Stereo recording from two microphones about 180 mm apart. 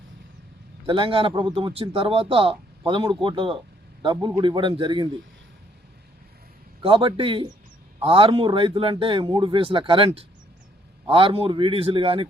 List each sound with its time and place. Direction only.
0.9 s speech: 30° right (ahead or behind)
6.8 s speech: 30° right (ahead or behind)